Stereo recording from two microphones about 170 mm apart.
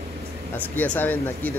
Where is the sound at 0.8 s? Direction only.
10° left (ahead or behind).